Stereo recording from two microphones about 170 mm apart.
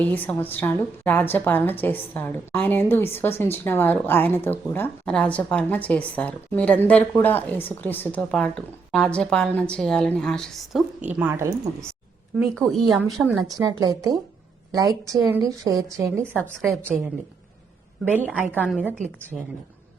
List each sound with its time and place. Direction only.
0.1 s a woman's voice: 10° left (ahead or behind)
11.1 s speech: 10° right (ahead or behind)
12.4 s a woman's voice: centre (ahead or behind)
13.5 s a woman's voice: 20° right (ahead or behind)
16.0 s a woman's voice: 5° left (ahead or behind)
18.1 s speech: 10° right (ahead or behind)
18.5 s a woman's voice: 5° left (ahead or behind)